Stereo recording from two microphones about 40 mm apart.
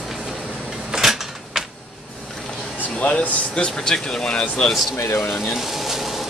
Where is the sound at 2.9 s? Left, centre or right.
Left.